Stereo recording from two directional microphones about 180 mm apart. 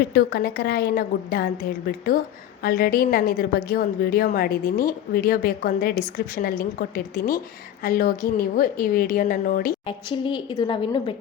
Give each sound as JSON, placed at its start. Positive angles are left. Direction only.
{"t": 0.1, "sound": "a woman's voice", "side_deg": 60}
{"t": 2.6, "sound": "a woman's voice", "side_deg": 55}
{"t": 9.8, "sound": "a woman's voice", "side_deg": 25}